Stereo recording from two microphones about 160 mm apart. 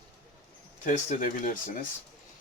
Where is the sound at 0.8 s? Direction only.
50° left (ahead or behind).